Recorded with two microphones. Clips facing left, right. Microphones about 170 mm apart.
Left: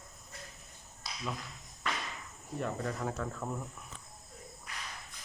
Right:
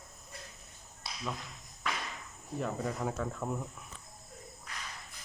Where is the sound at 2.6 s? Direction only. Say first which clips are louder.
Right 1 dB; 5° right (ahead or behind).